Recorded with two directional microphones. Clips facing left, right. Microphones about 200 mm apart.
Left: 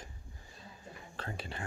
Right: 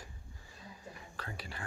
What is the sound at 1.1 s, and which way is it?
Speech, 25° left (ahead or behind).